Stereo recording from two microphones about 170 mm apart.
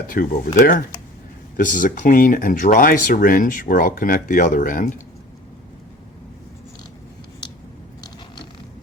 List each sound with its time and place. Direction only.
0.1 s speech: 55° left (ahead or behind)